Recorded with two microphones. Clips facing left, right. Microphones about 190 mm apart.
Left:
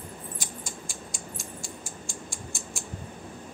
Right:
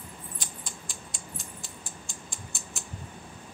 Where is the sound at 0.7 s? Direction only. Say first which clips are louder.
Left 4 dB; 45° left (ahead or behind).